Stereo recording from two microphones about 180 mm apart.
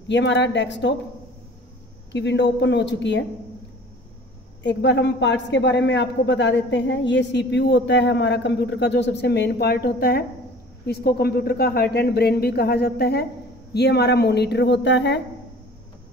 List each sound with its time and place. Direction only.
0.1 s speech: 80° left
2.1 s a woman's voice: 75° left (ahead or behind)
4.6 s a woman's voice: 80° left